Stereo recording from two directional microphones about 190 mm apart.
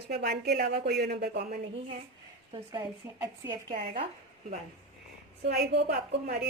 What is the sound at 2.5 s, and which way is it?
Speech, 25° right (ahead or behind).